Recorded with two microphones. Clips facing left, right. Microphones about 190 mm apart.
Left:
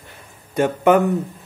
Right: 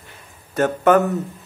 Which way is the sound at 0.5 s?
10° left (ahead or behind).